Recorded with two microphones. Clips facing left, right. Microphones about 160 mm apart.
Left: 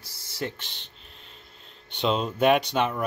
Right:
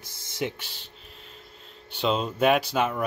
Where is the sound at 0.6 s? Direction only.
5° right (ahead or behind).